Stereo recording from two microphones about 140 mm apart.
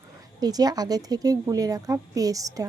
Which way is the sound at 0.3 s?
30° right (ahead or behind).